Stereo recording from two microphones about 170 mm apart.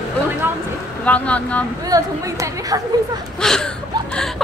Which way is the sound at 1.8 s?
20° right (ahead or behind).